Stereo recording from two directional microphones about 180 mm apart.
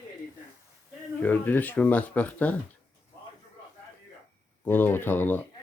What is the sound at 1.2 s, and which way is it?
Speech, 10° left (ahead or behind).